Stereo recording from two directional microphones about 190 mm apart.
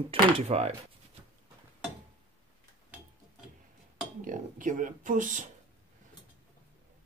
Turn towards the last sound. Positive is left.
turn(degrees=-40)  # may be behind; listen again after turning